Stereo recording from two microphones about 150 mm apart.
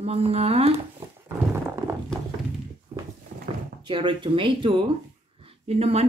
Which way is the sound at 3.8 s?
35° right (ahead or behind).